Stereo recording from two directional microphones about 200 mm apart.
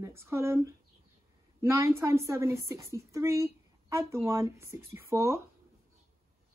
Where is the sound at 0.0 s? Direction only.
10° right (ahead or behind).